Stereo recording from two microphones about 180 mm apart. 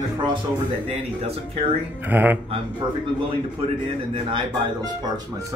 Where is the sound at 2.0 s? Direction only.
10° right (ahead or behind).